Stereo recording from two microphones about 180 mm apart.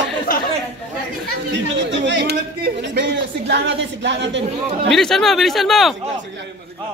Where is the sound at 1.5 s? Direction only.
80° right.